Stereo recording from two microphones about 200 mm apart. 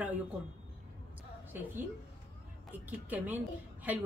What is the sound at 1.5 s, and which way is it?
Speech, 10° right (ahead or behind).